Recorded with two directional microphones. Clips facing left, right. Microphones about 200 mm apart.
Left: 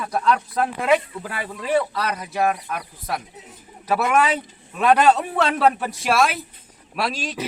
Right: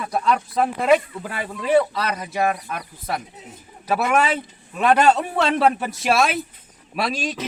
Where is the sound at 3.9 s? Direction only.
Centre (ahead or behind).